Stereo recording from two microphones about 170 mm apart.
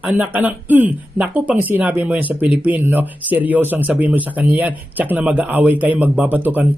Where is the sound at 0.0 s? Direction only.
10° right (ahead or behind).